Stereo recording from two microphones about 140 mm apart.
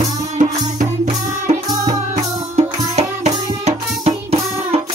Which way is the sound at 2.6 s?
50° right (ahead or behind).